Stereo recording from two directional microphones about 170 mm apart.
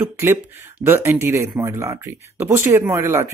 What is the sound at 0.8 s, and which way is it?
Speech, 10° right (ahead or behind).